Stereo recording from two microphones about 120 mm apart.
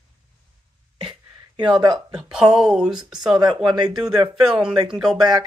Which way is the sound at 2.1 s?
5° right (ahead or behind).